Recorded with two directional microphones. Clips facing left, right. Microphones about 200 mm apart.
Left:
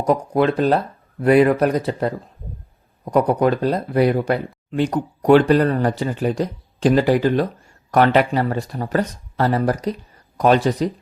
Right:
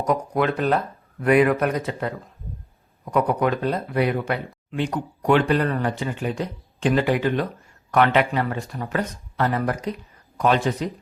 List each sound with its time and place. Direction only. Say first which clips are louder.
0.0 s speech: left 4 dB; 30° left (ahead or behind)